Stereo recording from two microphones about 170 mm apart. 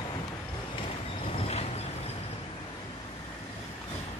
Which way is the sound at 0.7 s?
35° left (ahead or behind).